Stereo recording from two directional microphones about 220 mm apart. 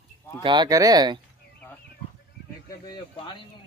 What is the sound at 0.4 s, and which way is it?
Speech, 20° right (ahead or behind).